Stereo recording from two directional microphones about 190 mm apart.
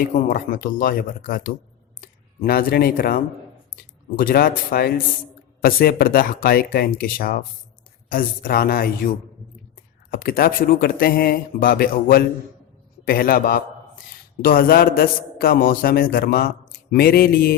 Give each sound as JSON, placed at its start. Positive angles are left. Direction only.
{"t": 0.3, "sound": "a man's voice", "side_deg": 45}
{"t": 4.2, "sound": "a man's voice", "side_deg": 50}
{"t": 10.1, "sound": "a man's voice", "side_deg": 50}